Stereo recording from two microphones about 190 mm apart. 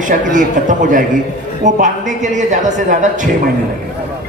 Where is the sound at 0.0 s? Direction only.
45° right (ahead or behind).